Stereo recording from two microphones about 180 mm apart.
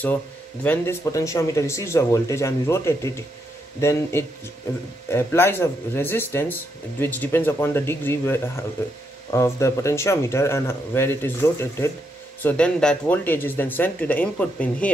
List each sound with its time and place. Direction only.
0.7 s speech: 15° left (ahead or behind)